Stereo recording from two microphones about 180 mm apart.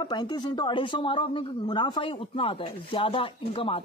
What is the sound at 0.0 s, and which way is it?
A woman's voice, 25° left (ahead or behind).